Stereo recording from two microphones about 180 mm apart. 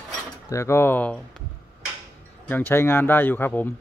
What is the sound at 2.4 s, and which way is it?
Speech, 10° left (ahead or behind).